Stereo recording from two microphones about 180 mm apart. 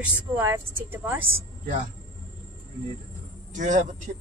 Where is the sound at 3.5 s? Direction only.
45° right (ahead or behind).